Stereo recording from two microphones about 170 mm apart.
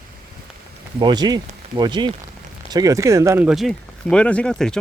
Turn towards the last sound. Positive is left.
turn(degrees=5)  # may be behind; listen again after turning